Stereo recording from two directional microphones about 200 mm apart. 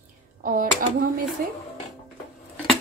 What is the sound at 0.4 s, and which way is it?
Speech, 45° right (ahead or behind).